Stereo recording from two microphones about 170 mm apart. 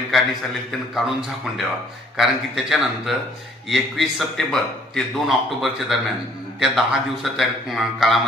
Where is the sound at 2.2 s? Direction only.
Centre (ahead or behind).